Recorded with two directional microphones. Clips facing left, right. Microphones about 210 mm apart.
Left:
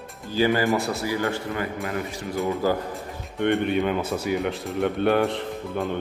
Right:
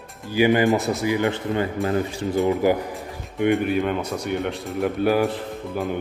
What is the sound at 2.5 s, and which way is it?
Speech, 15° right (ahead or behind).